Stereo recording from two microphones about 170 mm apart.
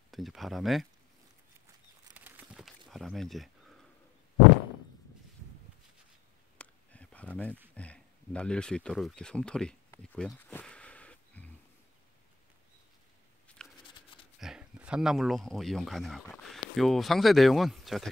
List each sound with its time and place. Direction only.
0.1 s speech: centre (ahead or behind)
2.1 s a sound: 10° right (ahead or behind)
6.6 s a sound: 5° left (ahead or behind)
7.7 s speech: 5° left (ahead or behind)
10.1 s insect: 5° left (ahead or behind)
13.6 s shuffling cards: 5° left (ahead or behind)
14.4 s speech: 5° right (ahead or behind)